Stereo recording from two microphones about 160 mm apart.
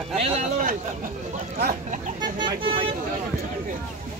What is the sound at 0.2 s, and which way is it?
Speech, 45° right (ahead or behind).